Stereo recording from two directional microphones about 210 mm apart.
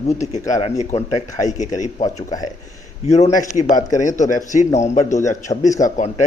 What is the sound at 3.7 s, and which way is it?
A man's voice, 35° left (ahead or behind).